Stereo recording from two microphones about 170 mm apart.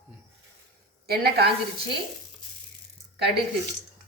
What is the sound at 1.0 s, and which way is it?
Speech, 70° right (ahead or behind).